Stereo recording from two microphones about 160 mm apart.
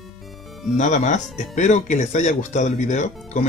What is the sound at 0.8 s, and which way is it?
Speech, 50° left (ahead or behind).